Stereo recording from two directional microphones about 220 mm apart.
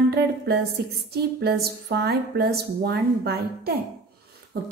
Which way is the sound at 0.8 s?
45° right (ahead or behind).